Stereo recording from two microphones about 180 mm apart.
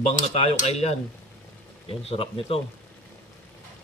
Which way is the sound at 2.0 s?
30° left (ahead or behind).